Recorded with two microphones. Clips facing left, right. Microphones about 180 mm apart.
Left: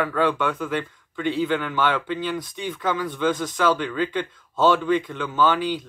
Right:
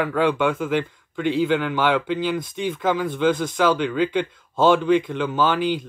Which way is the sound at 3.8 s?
15° right (ahead or behind).